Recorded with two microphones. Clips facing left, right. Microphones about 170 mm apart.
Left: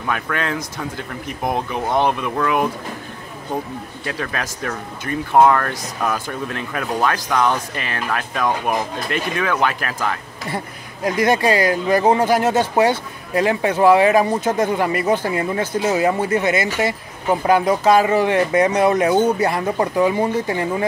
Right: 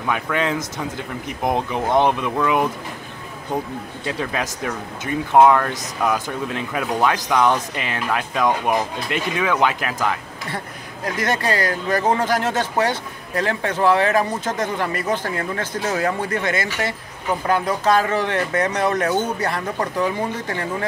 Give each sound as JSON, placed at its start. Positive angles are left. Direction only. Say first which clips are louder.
{"t": 0.1, "sound": "speech", "louder": "right 2 dB", "side_deg": -20}
{"t": 4.0, "sound": "speech", "louder": "right 1 dB", "side_deg": -20}
{"t": 11.1, "sound": "speech", "louder": "left 5 dB", "side_deg": 10}